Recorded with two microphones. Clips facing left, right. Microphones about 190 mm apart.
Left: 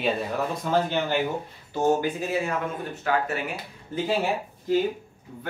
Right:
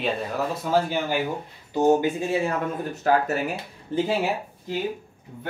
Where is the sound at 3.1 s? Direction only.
40° right (ahead or behind).